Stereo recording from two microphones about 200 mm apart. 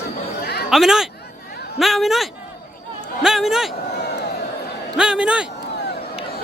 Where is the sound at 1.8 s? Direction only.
Centre (ahead or behind).